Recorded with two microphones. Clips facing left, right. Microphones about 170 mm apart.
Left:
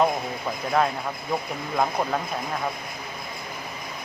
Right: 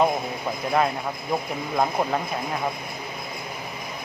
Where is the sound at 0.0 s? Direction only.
5° right (ahead or behind).